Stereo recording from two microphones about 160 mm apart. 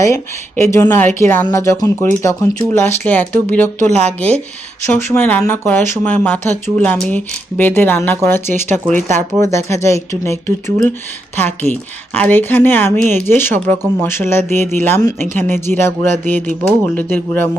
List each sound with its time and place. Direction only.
0.0 s speech: 15° left (ahead or behind)
8.7 s speech: 50° right (ahead or behind)
9.4 s speech: 15° left (ahead or behind)